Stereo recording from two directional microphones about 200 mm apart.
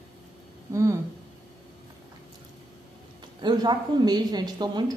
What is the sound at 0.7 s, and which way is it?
Speech, 15° right (ahead or behind).